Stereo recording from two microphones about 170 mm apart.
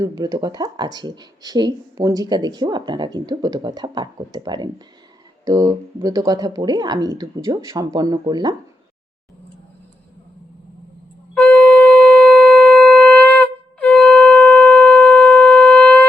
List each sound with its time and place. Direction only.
0.0 s speech: 25° right (ahead or behind)
11.3 s shofar: 5° left (ahead or behind)